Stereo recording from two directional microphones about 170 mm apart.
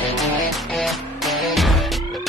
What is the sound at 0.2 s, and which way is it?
Music, centre (ahead or behind).